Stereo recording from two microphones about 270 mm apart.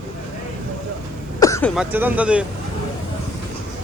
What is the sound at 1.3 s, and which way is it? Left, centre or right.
Throat clearing, centre.